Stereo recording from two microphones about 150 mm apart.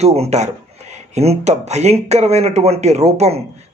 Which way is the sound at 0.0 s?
45° right (ahead or behind).